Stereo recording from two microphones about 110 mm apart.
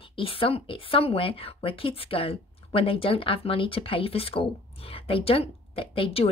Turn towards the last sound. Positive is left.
turn(degrees=55)  # may be behind; listen again after turning